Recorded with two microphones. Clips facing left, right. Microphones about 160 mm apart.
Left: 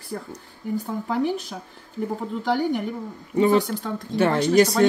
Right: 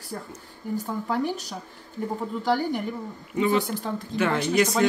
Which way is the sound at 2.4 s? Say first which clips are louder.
Left 2 dB; centre (ahead or behind).